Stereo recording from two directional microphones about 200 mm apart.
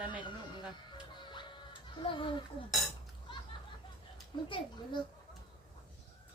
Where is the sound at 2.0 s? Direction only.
25° left (ahead or behind).